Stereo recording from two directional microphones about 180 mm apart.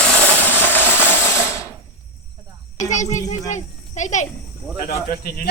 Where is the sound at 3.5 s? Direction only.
40° left (ahead or behind).